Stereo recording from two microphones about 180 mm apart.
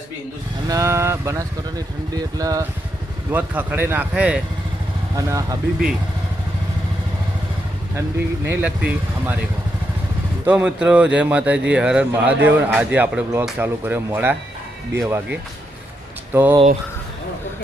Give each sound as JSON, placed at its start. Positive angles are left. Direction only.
{"t": 0.7, "sound": "speech", "side_deg": -15}
{"t": 3.3, "sound": "speech", "side_deg": -10}
{"t": 5.1, "sound": "speech", "side_deg": -20}
{"t": 8.4, "sound": "speech", "side_deg": -10}
{"t": 10.4, "sound": "speech", "side_deg": -5}